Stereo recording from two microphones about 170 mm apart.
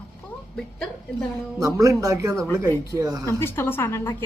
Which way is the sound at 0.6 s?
5° left (ahead or behind).